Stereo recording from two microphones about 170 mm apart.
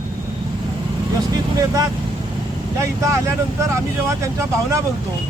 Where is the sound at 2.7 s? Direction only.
15° right (ahead or behind).